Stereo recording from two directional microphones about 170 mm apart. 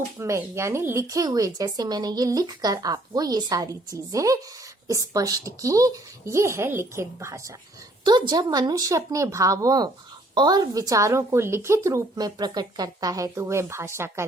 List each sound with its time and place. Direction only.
0.2 s a woman's voice: 15° right (ahead or behind)